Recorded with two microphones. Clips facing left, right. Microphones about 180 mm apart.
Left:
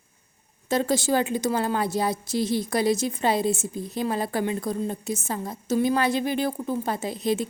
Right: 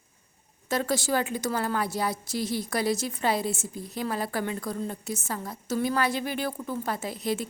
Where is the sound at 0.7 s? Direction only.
20° left (ahead or behind).